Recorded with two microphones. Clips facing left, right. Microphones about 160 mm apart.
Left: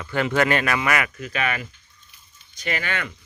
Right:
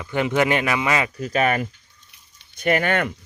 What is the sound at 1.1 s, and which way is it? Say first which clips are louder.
Speech: right 6 dB; 40° right (ahead or behind).